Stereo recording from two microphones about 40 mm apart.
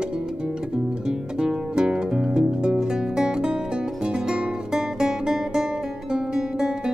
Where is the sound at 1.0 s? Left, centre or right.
Centre.